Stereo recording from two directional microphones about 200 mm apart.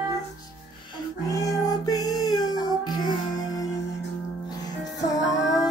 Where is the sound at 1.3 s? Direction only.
15° left (ahead or behind).